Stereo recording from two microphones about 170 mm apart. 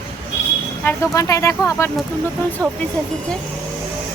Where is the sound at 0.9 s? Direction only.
20° left (ahead or behind).